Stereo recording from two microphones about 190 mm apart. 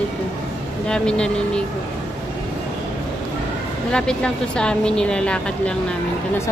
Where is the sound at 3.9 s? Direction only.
5° left (ahead or behind).